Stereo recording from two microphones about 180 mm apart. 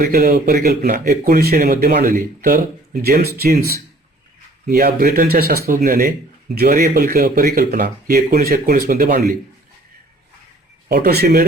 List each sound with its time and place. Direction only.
0.0 s speech: 50° right (ahead or behind)
10.8 s speech: 60° right (ahead or behind)